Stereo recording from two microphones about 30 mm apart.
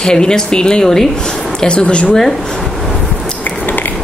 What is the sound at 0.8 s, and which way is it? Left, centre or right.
Speech, centre.